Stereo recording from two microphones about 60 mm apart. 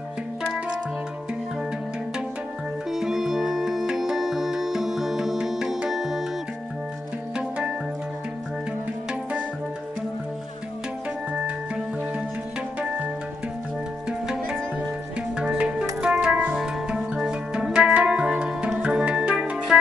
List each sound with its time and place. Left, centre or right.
2.9 s music: centre
7.3 s music: centre
12.8 s music: centre
18.7 s organ: centre